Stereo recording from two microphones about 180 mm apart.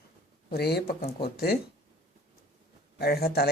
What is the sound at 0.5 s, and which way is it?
Speech, 65° left (ahead or behind).